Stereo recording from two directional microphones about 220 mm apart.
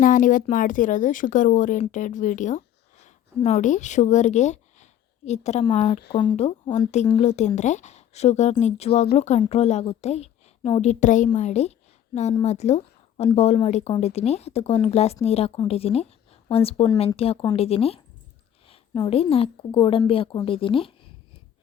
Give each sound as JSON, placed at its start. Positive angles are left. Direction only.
{"t": 0.0, "sound": "speech", "side_deg": 35}